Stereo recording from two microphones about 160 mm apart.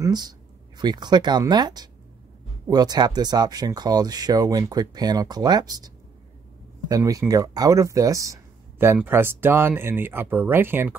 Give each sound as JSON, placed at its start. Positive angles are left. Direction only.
{"t": 0.0, "sound": "a sound", "side_deg": -25}
{"t": 0.7, "sound": "speech", "side_deg": -25}
{"t": 6.9, "sound": "speech", "side_deg": -20}